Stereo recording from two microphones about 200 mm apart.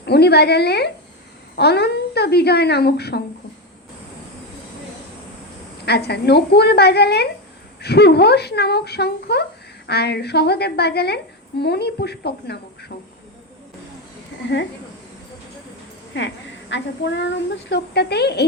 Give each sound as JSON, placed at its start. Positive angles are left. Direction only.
{"t": 0.0, "sound": "speech", "side_deg": 55}
{"t": 5.8, "sound": "speech", "side_deg": 55}
{"t": 16.1, "sound": "speech", "side_deg": 65}